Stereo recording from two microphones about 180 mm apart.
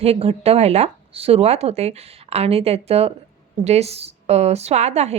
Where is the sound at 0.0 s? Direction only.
35° right (ahead or behind).